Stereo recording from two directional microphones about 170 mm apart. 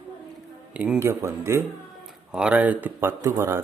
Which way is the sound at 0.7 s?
10° right (ahead or behind).